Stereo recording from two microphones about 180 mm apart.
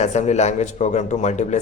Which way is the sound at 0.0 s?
40° left (ahead or behind).